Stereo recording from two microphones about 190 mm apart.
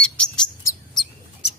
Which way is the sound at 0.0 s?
5° left (ahead or behind).